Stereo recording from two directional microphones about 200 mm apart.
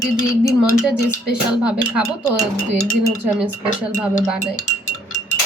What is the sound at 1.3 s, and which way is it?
Speech, 5° right (ahead or behind).